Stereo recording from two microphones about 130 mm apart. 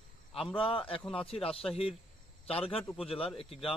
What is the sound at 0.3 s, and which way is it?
Speech, 45° left (ahead or behind).